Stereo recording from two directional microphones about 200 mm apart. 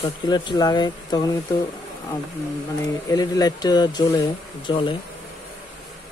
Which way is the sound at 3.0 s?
20° left (ahead or behind).